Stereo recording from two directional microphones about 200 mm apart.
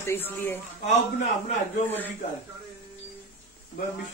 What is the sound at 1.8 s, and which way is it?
Speech, 10° left (ahead or behind).